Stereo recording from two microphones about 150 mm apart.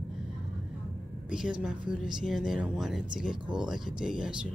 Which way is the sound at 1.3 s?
5° right (ahead or behind).